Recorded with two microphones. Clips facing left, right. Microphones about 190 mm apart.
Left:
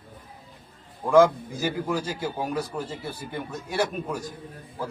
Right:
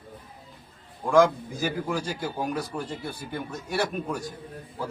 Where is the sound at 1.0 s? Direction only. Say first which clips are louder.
Left 2 dB; 5° left (ahead or behind).